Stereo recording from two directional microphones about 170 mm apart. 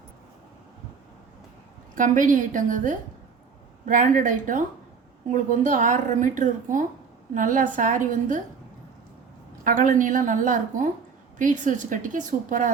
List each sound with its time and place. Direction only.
2.0 s a woman's voice: 50° right (ahead or behind)
9.6 s a woman's voice: 50° right (ahead or behind)